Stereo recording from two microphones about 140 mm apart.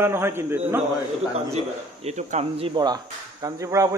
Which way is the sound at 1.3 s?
50° right (ahead or behind).